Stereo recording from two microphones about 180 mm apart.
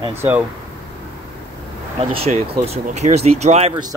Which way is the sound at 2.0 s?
30° right (ahead or behind).